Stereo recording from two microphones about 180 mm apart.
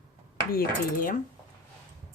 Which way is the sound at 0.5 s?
50° left (ahead or behind).